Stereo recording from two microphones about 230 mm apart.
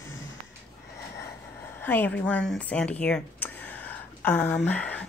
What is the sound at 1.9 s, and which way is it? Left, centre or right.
Speech, centre.